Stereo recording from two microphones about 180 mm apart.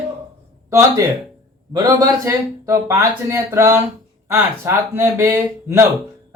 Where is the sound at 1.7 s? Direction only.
20° right (ahead or behind).